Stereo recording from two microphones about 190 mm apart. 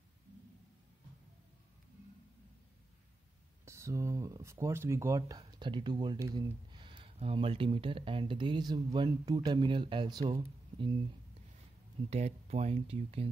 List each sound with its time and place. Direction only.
3.6 s speech: 15° right (ahead or behind)
5.5 s speech: 25° right (ahead or behind)
12.1 s speech: 35° right (ahead or behind)